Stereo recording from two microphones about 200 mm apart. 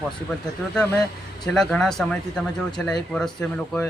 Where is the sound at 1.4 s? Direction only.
Centre (ahead or behind).